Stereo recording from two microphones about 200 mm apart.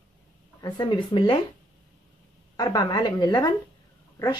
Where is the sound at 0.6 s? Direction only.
25° left (ahead or behind).